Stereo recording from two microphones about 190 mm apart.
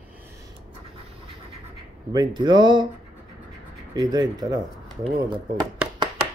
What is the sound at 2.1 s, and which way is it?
Speech, 25° right (ahead or behind).